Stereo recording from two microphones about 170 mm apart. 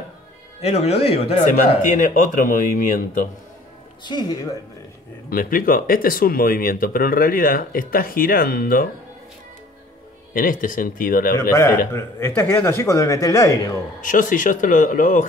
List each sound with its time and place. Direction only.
0.6 s speech: 35° left (ahead or behind)
1.8 s speech: 50° left (ahead or behind)
4.0 s speech: 25° left (ahead or behind)
5.3 s speech: 55° left (ahead or behind)
10.3 s speech: 55° left (ahead or behind)
11.5 s speech: 15° left (ahead or behind)
14.0 s speech: 50° left (ahead or behind)